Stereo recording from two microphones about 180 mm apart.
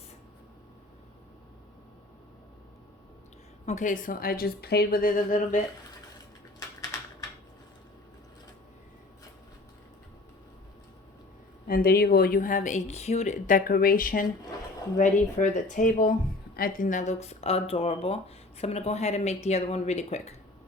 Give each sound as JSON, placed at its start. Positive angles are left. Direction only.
{"t": 3.7, "sound": "speech", "side_deg": 45}
{"t": 11.7, "sound": "speech", "side_deg": 55}